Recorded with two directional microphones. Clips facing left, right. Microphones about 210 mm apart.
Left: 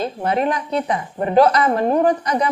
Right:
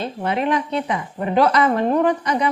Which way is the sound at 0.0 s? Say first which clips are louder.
Left 2 dB; 40° left (ahead or behind).